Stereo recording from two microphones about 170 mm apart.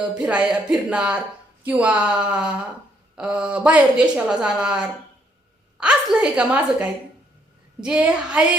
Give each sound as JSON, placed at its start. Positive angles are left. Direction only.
{"t": 0.0, "sound": "a woman's voice", "side_deg": -5}